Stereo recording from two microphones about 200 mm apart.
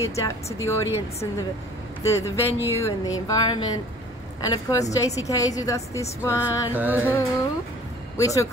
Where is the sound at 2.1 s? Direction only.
15° left (ahead or behind).